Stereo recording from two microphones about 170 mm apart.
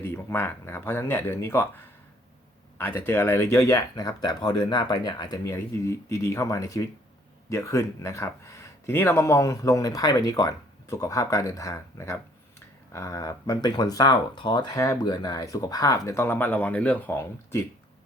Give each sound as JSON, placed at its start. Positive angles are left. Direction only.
{"t": 0.0, "sound": "speech", "side_deg": 15}
{"t": 2.7, "sound": "speech", "side_deg": 15}